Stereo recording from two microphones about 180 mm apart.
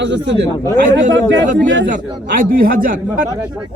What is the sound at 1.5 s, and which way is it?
Speech, 90° right.